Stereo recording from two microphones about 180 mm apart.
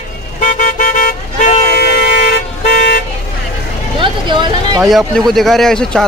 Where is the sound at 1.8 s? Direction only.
65° left (ahead or behind).